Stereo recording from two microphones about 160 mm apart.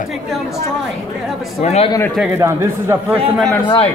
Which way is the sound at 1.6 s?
45° left (ahead or behind).